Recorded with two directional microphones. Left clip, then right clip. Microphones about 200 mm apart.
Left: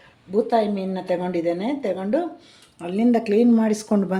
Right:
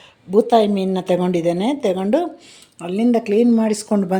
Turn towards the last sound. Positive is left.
turn(degrees=-15)  # may be behind; listen again after turning